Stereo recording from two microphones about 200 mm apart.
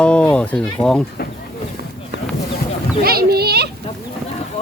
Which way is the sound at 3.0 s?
50° right (ahead or behind).